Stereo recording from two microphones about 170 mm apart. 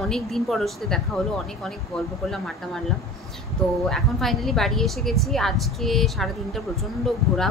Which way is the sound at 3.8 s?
Centre (ahead or behind).